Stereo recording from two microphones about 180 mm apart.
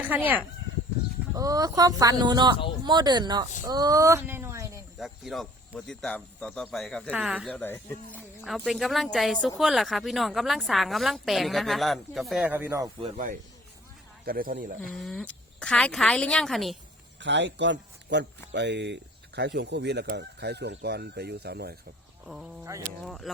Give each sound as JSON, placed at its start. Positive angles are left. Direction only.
{"t": 0.0, "sound": "speech", "side_deg": -10}
{"t": 1.3, "sound": "speech", "side_deg": -20}
{"t": 4.9, "sound": "a woman's voice", "side_deg": 0}
{"t": 7.5, "sound": "speech", "side_deg": 10}
{"t": 8.4, "sound": "a woman's voice", "side_deg": 0}
{"t": 14.3, "sound": "speech", "side_deg": -50}
{"t": 14.9, "sound": "a woman's voice", "side_deg": 5}
{"t": 17.2, "sound": "speech", "side_deg": -80}
{"t": 22.7, "sound": "speech", "side_deg": -20}
{"t": 23.0, "sound": "a woman's voice", "side_deg": 0}